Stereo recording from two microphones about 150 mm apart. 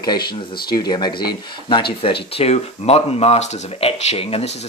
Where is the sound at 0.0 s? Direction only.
30° left (ahead or behind).